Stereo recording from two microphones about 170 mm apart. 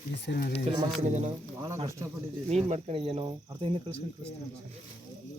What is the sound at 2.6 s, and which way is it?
Speech, 35° right (ahead or behind).